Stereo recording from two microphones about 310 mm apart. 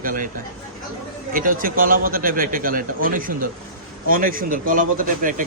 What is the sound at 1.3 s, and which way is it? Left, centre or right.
Speech, right.